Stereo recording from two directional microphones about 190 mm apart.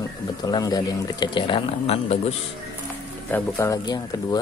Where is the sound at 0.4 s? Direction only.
20° left (ahead or behind).